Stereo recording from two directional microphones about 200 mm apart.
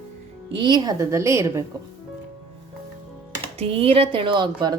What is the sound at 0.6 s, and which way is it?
A woman's voice, 20° right (ahead or behind).